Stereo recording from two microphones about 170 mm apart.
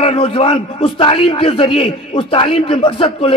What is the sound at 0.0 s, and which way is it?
A man's voice, 35° left (ahead or behind).